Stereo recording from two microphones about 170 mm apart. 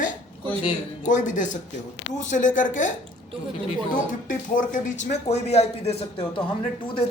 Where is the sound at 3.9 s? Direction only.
50° left (ahead or behind).